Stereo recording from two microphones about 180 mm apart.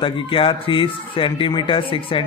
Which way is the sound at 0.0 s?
30° left (ahead or behind).